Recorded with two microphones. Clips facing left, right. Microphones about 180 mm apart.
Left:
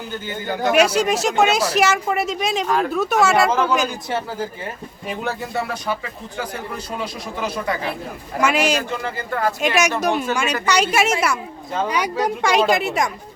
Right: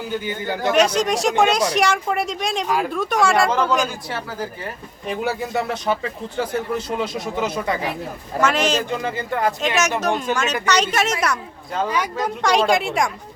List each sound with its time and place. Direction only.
0.7 s speech: 10° left (ahead or behind); by 2.9 s 5° right (ahead or behind)
2.9 s speech: 5° left (ahead or behind)
5.0 s speech: 5° right (ahead or behind)
5.5 s speech: 20° right (ahead or behind)
8.4 s speech: 10° left (ahead or behind)
9.0 s speech: 20° right (ahead or behind)
9.6 s speech: 10° left (ahead or behind)
11.9 s speech: 15° left (ahead or behind); by 13.1 s centre (ahead or behind)